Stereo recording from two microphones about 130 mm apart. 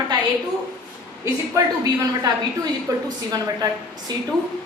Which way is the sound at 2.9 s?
25° right (ahead or behind).